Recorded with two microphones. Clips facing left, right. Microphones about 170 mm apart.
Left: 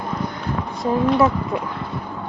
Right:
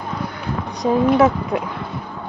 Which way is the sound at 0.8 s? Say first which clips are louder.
Right 3 dB; 20° right (ahead or behind).